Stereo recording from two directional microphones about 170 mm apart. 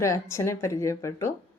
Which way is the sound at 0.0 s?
15° left (ahead or behind).